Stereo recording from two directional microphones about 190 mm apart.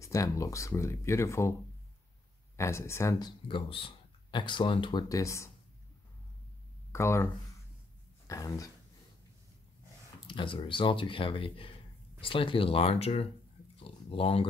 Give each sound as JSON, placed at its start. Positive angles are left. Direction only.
{"t": 0.0, "sound": "speech", "side_deg": 15}
{"t": 2.5, "sound": "speech", "side_deg": 15}
{"t": 6.9, "sound": "speech", "side_deg": 15}
{"t": 8.3, "sound": "speech", "side_deg": 20}
{"t": 10.2, "sound": "speech", "side_deg": 25}